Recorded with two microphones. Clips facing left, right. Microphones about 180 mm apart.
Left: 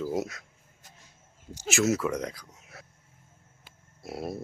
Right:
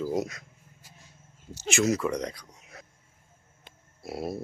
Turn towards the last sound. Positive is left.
turn(degrees=0)  # may be behind; listen again after turning